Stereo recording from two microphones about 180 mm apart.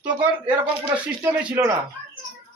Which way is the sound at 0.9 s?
10° right (ahead or behind).